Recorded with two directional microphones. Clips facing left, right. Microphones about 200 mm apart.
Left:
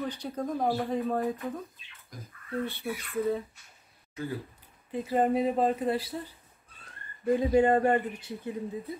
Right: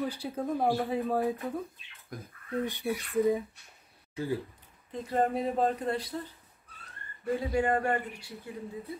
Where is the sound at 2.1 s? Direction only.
55° right (ahead or behind).